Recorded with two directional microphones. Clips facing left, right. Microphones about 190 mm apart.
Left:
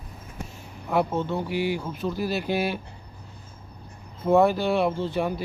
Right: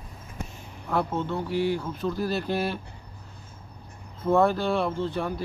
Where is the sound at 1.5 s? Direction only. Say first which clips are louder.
Right 3 dB; 90° left.